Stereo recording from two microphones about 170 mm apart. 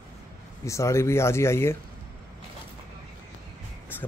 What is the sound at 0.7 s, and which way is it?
Speech, 15° left (ahead or behind).